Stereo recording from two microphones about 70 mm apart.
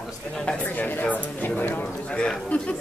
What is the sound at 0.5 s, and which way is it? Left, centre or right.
Speech, left.